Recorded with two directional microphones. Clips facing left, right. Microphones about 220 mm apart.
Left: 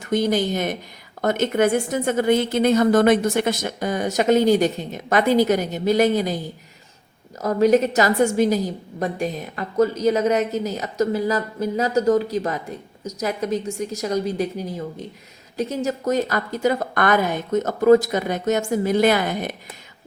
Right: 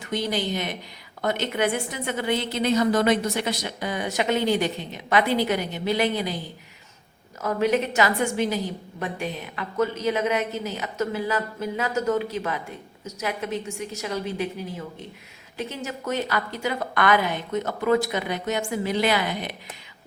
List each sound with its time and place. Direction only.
0.0 s a woman's voice: 45° left (ahead or behind)
7.4 s a woman's voice: 40° left (ahead or behind)